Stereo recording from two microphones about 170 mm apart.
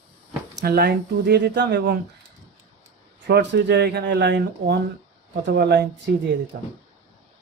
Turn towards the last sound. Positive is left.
turn(degrees=-70)  # may be behind; listen again after turning